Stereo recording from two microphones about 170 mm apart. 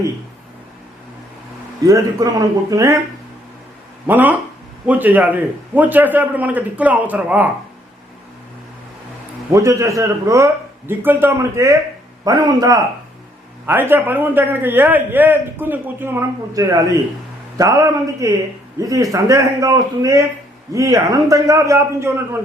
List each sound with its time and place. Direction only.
1.8 s a man's voice: 20° right (ahead or behind)
4.0 s a man's voice: 10° right (ahead or behind)
9.5 s a man's voice: 20° right (ahead or behind)